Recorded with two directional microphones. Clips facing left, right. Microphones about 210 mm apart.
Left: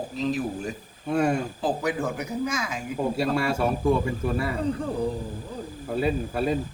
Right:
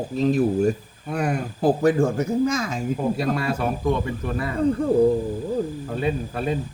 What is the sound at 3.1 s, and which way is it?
Speech, 5° left (ahead or behind).